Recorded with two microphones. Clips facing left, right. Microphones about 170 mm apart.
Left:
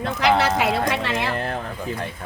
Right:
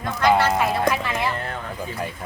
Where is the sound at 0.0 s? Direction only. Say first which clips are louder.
Even; 75° left (ahead or behind).